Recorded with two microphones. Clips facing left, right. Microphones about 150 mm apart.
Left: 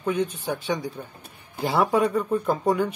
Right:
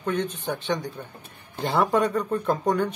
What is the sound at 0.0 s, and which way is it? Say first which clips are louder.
Speech: left 2 dB; 10° left (ahead or behind).